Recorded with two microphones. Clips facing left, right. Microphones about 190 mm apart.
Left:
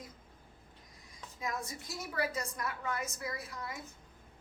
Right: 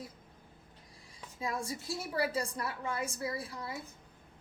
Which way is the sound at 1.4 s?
30° right (ahead or behind).